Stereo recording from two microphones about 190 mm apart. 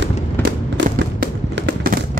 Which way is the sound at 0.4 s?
70° right (ahead or behind).